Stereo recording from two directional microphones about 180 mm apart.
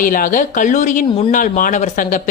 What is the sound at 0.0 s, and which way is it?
Speech, 50° left (ahead or behind).